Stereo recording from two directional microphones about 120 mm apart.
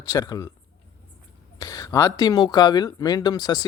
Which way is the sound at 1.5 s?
30° left (ahead or behind).